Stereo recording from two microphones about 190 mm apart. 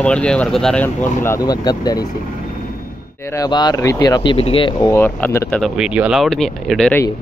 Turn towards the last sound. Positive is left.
turn(degrees=5)  # may be behind; listen again after turning